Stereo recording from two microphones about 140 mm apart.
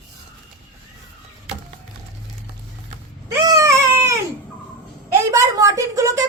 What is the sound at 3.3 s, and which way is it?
Baby cry, 25° right (ahead or behind).